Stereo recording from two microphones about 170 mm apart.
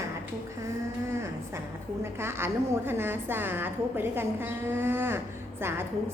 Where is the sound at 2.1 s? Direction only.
15° right (ahead or behind).